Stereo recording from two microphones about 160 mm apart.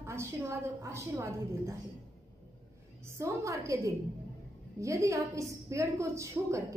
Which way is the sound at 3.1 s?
20° right (ahead or behind).